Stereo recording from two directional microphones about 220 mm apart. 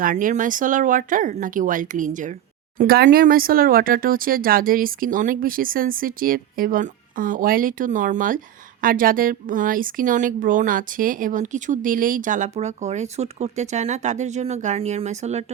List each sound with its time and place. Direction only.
0.0 s a woman's voice: 35° right (ahead or behind)